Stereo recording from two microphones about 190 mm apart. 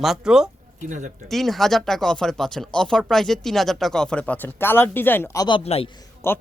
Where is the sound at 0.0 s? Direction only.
Centre (ahead or behind).